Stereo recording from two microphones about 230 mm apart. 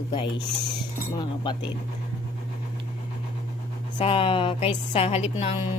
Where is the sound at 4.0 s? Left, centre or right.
Left.